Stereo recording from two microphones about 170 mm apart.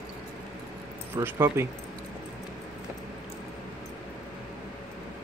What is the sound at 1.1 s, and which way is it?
Speech, 15° right (ahead or behind).